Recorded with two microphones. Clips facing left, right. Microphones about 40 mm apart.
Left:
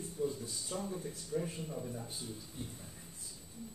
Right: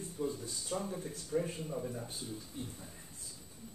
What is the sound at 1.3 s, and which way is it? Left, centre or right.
Speech, right.